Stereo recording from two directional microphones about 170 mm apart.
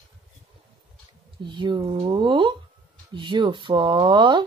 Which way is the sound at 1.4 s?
30° right (ahead or behind).